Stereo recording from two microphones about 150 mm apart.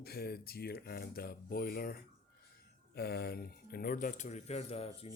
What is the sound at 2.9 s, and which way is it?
Speech, 90° left.